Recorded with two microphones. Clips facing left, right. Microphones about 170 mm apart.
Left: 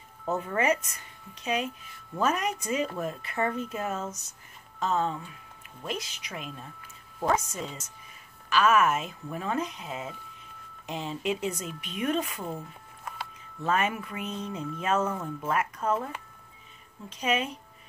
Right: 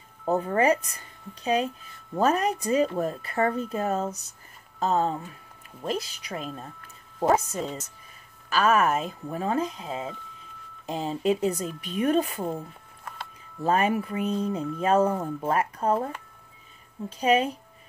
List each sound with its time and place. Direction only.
0.2 s a woman's voice: 35° right (ahead or behind)
17.2 s speech: 35° right (ahead or behind)